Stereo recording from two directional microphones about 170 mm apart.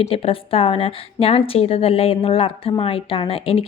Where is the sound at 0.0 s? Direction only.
35° left (ahead or behind).